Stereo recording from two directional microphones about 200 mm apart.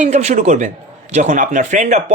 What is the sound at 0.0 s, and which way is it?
Speech, 35° right (ahead or behind).